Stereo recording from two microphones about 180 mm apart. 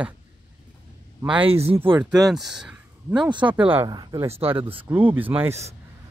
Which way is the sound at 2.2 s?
Centre (ahead or behind).